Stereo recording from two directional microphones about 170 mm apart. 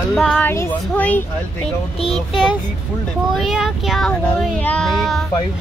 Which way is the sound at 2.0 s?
35° left (ahead or behind).